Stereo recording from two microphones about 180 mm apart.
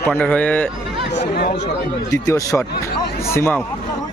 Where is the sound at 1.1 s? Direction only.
65° left (ahead or behind).